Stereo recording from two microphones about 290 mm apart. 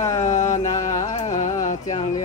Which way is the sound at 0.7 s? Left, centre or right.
Centre.